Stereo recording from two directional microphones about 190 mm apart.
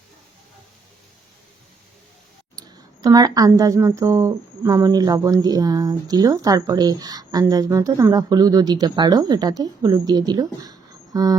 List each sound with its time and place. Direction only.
2.6 s speech: 20° right (ahead or behind)